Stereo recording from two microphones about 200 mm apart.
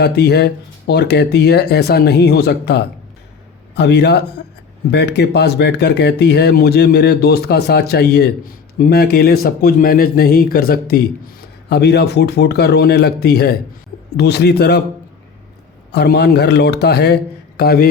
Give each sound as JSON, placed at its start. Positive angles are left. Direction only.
{"t": 0.0, "sound": "speech", "side_deg": 55}
{"t": 15.9, "sound": "speech", "side_deg": 55}